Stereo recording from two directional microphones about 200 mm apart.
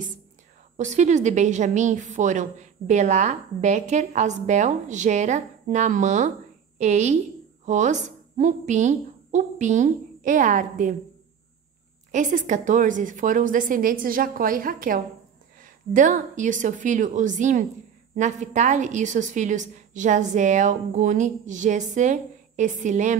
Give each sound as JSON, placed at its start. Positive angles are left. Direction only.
{"t": 0.7, "sound": "a woman's voice", "side_deg": -35}
{"t": 12.1, "sound": "a woman's voice", "side_deg": -40}